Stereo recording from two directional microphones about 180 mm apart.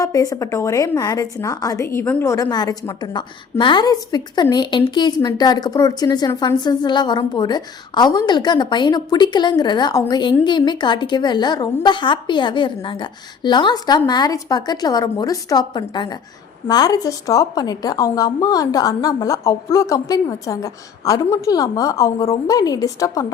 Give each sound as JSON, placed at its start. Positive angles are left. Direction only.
{"t": 0.0, "sound": "a woman's voice", "side_deg": 20}